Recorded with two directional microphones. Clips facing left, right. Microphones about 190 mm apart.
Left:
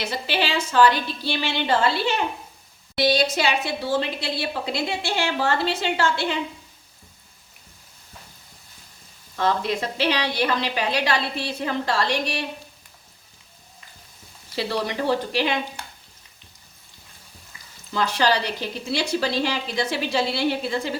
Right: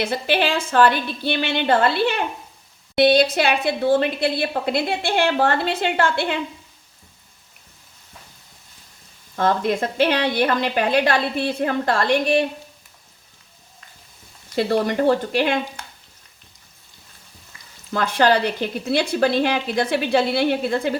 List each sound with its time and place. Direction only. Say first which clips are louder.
0.0 s a woman's voice: right 5 dB; 55° right (ahead or behind)
9.3 s a woman's voice: right 3 dB; 50° right (ahead or behind)
14.5 s a woman's voice: right 6 dB; 50° right (ahead or behind)
17.9 s a woman's voice: right 4 dB; 55° right (ahead or behind)